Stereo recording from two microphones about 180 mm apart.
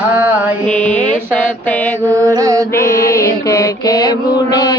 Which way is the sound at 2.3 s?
20° right (ahead or behind).